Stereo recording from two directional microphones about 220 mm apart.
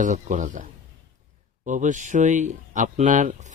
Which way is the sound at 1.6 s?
35° right (ahead or behind).